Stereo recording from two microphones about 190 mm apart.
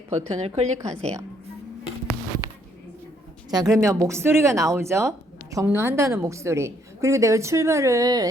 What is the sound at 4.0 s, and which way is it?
A woman's voice, 15° right (ahead or behind).